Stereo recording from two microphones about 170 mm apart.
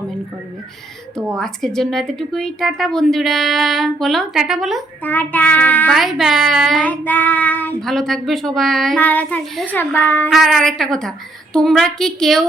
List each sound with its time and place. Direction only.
1.4 s speech: 5° left (ahead or behind)
5.0 s child singing: 10° left (ahead or behind)
5.9 s speech: centre (ahead or behind)
7.0 s child singing: 10° left (ahead or behind)
10.3 s speech: centre (ahead or behind)